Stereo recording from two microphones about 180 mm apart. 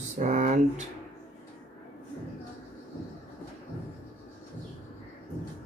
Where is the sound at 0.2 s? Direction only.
45° right (ahead or behind).